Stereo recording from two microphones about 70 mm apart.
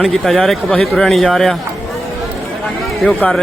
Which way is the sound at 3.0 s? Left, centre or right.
Centre.